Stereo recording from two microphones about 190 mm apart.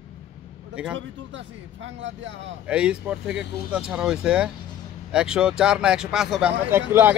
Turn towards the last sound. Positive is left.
turn(degrees=-10)  # may be behind; listen again after turning